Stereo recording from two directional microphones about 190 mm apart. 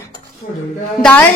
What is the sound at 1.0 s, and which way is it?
Speech, 10° left (ahead or behind).